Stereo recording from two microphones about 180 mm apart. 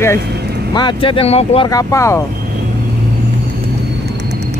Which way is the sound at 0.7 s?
25° left (ahead or behind).